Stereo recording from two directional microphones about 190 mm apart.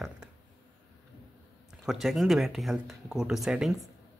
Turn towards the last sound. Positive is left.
turn(degrees=0)  # may be behind; listen again after turning